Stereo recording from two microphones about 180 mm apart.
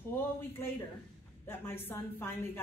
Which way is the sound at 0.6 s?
15° left (ahead or behind).